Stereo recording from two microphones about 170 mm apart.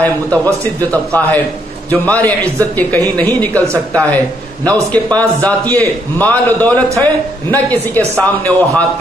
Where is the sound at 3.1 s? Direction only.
10° left (ahead or behind).